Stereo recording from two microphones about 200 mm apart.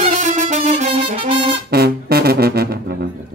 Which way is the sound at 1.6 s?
50° right (ahead or behind).